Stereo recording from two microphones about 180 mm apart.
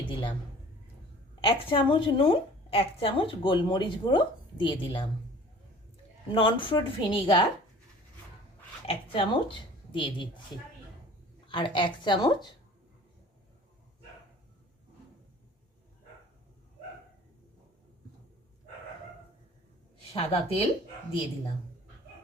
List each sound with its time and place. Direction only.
0.0 s a woman's voice: 25° left (ahead or behind)
1.4 s a woman's voice: 30° left (ahead or behind)
6.3 s a woman's voice: 30° left (ahead or behind)
8.9 s a woman's voice: 30° left (ahead or behind)
11.4 s a woman's voice: 25° left (ahead or behind)
20.1 s speech: 35° left (ahead or behind)